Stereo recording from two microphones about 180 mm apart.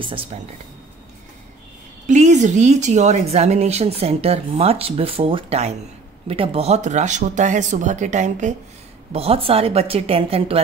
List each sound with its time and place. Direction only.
0.0 s speech: 30° right (ahead or behind)
2.0 s speech: 40° right (ahead or behind)